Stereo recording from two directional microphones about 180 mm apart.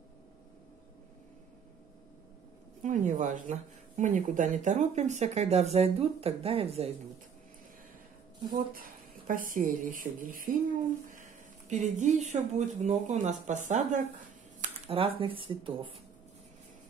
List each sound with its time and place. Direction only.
2.8 s speech: 45° right (ahead or behind)
9.3 s speech: 50° right (ahead or behind)
14.6 s speech: 30° right (ahead or behind)